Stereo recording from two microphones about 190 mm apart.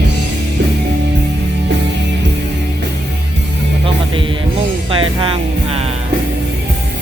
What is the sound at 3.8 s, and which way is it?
Music, 25° right (ahead or behind).